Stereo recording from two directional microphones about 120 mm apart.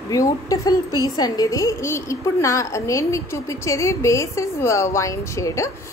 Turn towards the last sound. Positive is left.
turn(degrees=25)  # may be behind; listen again after turning